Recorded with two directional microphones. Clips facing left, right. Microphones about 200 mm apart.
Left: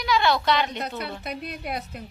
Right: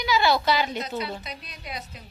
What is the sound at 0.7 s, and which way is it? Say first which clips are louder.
Speech: right 1 dB; 60° left (ahead or behind).